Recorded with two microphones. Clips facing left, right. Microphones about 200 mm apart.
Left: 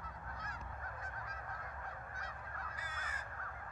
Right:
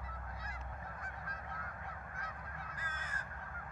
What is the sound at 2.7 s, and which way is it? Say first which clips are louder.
Crow: right 1 dB; 10° left (ahead or behind).